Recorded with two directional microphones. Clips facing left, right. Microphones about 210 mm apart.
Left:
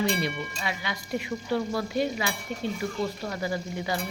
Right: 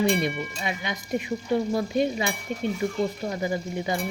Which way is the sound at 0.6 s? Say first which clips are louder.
Right 2 dB; 20° right (ahead or behind).